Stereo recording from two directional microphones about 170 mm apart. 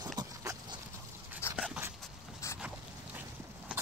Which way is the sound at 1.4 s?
15° left (ahead or behind).